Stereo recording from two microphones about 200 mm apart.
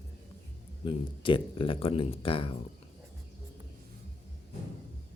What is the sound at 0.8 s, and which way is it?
Speech, 25° left (ahead or behind).